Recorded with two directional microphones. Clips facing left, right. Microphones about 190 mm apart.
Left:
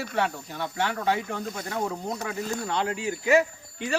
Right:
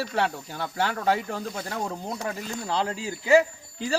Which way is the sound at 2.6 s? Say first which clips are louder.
Right 2 dB; 30° right (ahead or behind).